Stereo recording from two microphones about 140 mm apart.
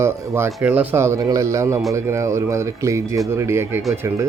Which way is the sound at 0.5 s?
10° right (ahead or behind).